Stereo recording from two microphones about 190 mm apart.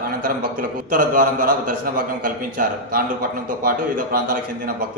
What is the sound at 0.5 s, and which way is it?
A man's voice, 45° right (ahead or behind).